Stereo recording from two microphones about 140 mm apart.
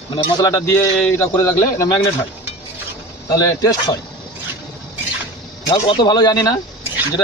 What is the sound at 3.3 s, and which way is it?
Speech, 25° left (ahead or behind).